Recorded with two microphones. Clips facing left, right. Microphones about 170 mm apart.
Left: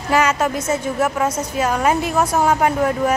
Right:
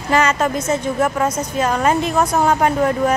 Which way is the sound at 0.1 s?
10° left (ahead or behind).